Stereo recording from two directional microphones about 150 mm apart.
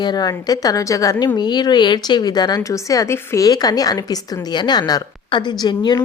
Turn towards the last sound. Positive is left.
turn(degrees=30)  # may be behind; listen again after turning